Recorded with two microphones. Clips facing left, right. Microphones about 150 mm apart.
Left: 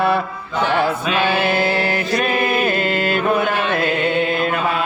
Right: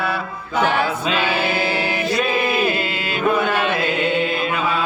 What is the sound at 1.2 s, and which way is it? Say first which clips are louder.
Chant: left 3 dB; 55° left (ahead or behind).